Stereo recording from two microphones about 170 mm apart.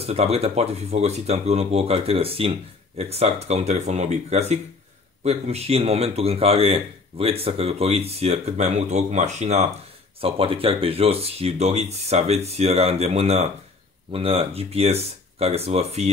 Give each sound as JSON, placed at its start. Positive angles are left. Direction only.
{"t": 0.0, "sound": "speech", "side_deg": -35}